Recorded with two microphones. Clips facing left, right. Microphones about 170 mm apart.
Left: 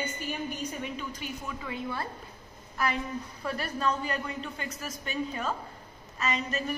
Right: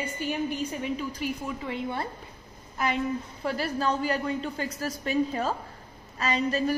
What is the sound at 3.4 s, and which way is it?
A woman's voice, 30° right (ahead or behind).